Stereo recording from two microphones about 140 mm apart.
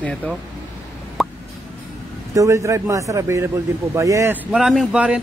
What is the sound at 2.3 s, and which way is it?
A man's voice, 25° right (ahead or behind).